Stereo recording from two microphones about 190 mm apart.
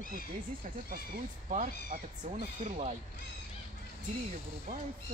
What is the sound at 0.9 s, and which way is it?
Speech, 45° right (ahead or behind).